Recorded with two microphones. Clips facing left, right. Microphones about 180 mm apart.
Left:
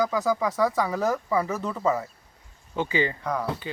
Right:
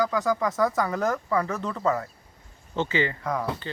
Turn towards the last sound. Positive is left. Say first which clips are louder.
# even
turn(degrees=0)  # may be behind; listen again after turning